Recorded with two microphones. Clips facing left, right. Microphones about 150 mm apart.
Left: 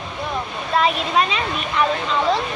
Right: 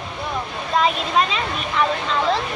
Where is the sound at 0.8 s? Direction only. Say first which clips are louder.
Even; 5° left (ahead or behind).